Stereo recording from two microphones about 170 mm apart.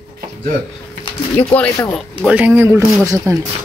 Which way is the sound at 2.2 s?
10° right (ahead or behind).